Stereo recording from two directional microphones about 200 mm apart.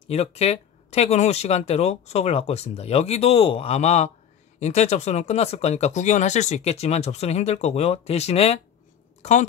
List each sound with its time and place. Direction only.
0.1 s speech: 30° left (ahead or behind)